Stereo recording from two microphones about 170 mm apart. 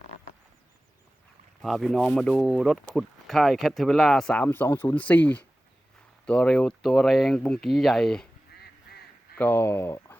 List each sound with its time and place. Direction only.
1.6 s speech: centre (ahead or behind)
8.9 s honk: 65° left (ahead or behind)
9.3 s speech: 10° left (ahead or behind)